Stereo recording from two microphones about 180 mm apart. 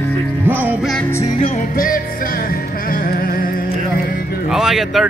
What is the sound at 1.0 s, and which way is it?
Music, 15° left (ahead or behind).